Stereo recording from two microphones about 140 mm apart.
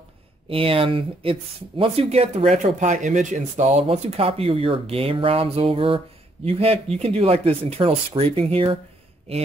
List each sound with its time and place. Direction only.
0.5 s speech: 40° right (ahead or behind); by 3.8 s 60° right (ahead or behind)
3.8 s speech: 45° right (ahead or behind)